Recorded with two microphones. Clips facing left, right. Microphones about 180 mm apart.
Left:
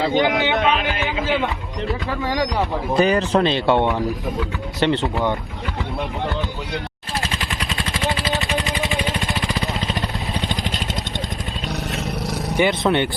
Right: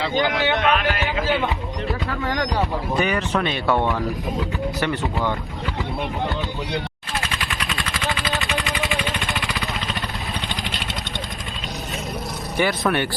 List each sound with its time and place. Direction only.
0.1 s speech: 20° left (ahead or behind)
2.9 s speech: 35° left (ahead or behind)
8.4 s a sound: 35° left (ahead or behind)
10.6 s vehicle: 40° left (ahead or behind)
12.5 s speech: 20° left (ahead or behind)